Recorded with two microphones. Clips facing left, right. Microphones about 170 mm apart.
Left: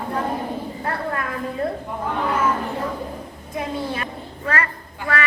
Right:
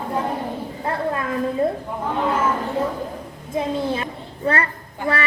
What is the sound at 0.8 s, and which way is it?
Speech, 20° right (ahead or behind).